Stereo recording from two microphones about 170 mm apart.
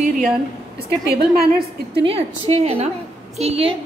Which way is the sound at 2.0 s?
35° right (ahead or behind).